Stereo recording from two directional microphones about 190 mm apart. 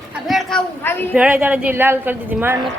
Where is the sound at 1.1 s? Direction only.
10° right (ahead or behind).